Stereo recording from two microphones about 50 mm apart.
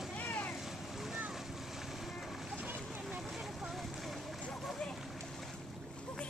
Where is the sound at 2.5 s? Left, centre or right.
Right.